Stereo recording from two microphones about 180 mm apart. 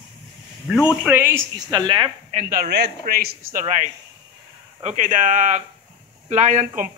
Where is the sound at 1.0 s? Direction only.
10° right (ahead or behind).